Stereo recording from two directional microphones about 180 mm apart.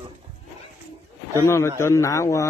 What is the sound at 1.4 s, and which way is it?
A man's voice, 15° left (ahead or behind).